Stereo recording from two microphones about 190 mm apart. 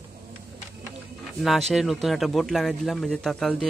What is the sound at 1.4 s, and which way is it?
Speech, centre (ahead or behind).